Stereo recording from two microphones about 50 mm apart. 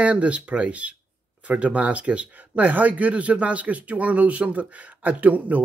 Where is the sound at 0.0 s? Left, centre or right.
Right.